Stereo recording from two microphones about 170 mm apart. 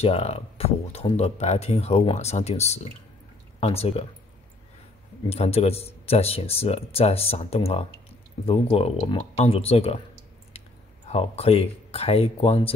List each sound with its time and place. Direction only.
0.0 s speech: 35° left (ahead or behind)
5.3 s speech: 35° left (ahead or behind)
11.1 s speech: 35° left (ahead or behind)